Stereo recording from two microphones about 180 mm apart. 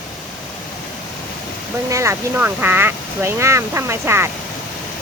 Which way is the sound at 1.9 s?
15° right (ahead or behind).